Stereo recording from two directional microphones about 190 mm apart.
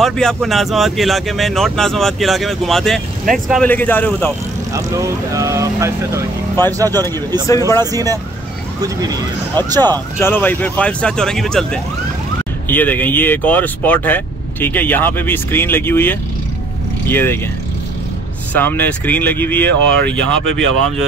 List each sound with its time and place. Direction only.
0.0 s speech: centre (ahead or behind)
4.7 s speech: 15° right (ahead or behind)
7.4 s speech: 15° left (ahead or behind)
7.8 s speech: 20° right (ahead or behind)
10.1 s speech: 10° left (ahead or behind)
18.5 s speech: 10° left (ahead or behind)